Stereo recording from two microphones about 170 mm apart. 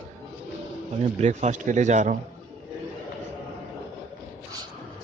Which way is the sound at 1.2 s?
45° right (ahead or behind).